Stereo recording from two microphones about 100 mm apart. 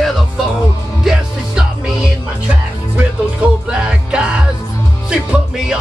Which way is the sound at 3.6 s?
10° right (ahead or behind).